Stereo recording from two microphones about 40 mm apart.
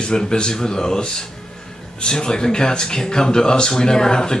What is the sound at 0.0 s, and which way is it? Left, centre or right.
Speech, centre.